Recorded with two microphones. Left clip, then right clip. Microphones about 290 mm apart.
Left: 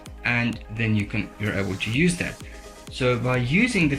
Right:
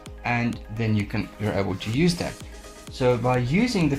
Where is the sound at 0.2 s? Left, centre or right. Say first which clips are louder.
Left 2 dB; centre.